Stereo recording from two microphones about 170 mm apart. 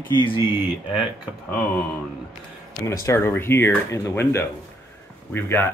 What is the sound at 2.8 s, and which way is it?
Speech, 15° left (ahead or behind).